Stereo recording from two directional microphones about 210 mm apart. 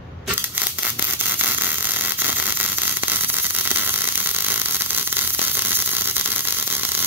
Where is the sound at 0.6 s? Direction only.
10° right (ahead or behind).